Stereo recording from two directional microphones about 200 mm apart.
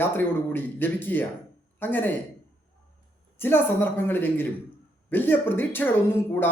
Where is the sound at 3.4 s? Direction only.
10° left (ahead or behind).